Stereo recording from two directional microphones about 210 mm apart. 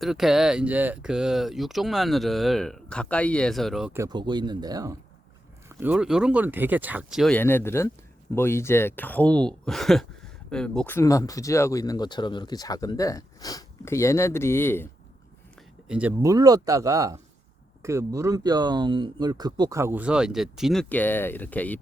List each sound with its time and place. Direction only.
0.0 s speech: centre (ahead or behind)
4.0 s speech: 20° right (ahead or behind); by 14.8 s 10° left (ahead or behind)
15.9 s speech: 5° right (ahead or behind)